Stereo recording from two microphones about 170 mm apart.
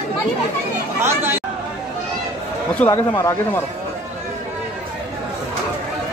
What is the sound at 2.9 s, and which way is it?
Speech, 20° left (ahead or behind).